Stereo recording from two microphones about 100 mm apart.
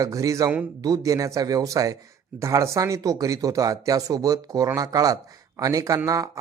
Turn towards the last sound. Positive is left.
turn(degrees=-35)  # may be behind; listen again after turning